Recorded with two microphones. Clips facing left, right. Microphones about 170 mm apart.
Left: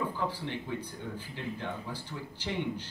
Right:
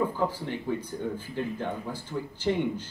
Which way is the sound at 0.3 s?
45° right (ahead or behind).